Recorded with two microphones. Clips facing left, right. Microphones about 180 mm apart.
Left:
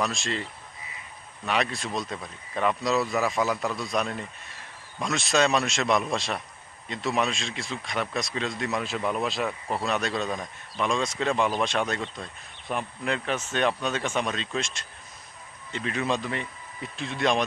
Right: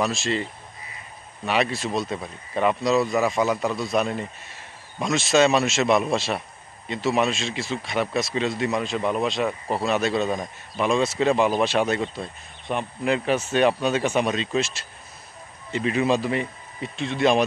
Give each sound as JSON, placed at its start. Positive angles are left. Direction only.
{"t": 0.0, "sound": "speech", "side_deg": -5}